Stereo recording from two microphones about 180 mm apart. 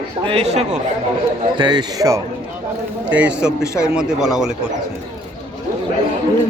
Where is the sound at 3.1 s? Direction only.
5° right (ahead or behind).